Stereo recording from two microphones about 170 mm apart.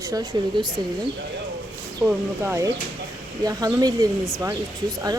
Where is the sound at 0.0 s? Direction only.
20° right (ahead or behind).